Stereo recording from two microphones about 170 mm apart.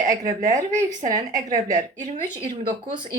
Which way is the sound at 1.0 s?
45° right (ahead or behind).